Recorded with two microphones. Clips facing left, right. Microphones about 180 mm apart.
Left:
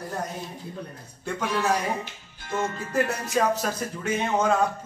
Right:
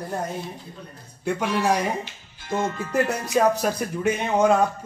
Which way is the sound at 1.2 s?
15° right (ahead or behind).